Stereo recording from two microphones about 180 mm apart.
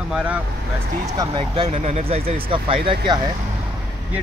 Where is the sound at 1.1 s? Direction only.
25° right (ahead or behind).